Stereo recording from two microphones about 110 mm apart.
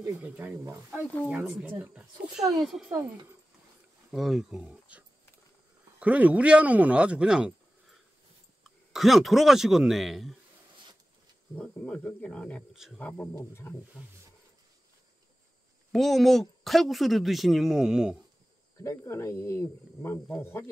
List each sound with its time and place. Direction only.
0.2 s speech: 20° right (ahead or behind)
2.0 s speech: 5° right (ahead or behind)
4.1 s speech: centre (ahead or behind)
8.6 s speech: centre (ahead or behind)
11.5 s speech: 10° left (ahead or behind)
15.9 s speech: centre (ahead or behind)
18.8 s speech: 25° left (ahead or behind)